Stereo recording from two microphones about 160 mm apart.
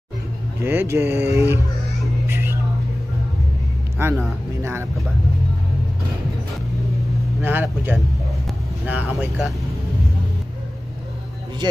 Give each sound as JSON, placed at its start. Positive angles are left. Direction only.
{"t": 0.6, "sound": "speech", "side_deg": -15}
{"t": 2.2, "sound": "music", "side_deg": -15}
{"t": 4.0, "sound": "speech", "side_deg": -15}
{"t": 7.4, "sound": "speech", "side_deg": -15}